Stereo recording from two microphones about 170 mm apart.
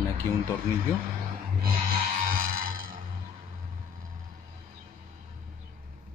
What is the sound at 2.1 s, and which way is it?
Music, 55° right (ahead or behind).